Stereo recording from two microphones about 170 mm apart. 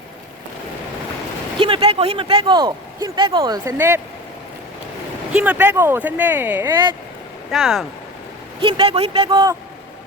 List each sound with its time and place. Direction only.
1.5 s speech: 30° right (ahead or behind); by 4.0 s 15° right (ahead or behind)
5.3 s speech: 10° right (ahead or behind)
7.5 s speech: centre (ahead or behind)
8.6 s speech: 35° right (ahead or behind)